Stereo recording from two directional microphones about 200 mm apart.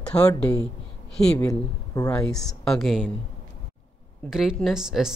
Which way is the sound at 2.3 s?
Centre (ahead or behind).